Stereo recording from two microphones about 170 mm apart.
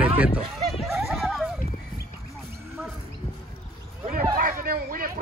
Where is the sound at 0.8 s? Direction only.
Centre (ahead or behind).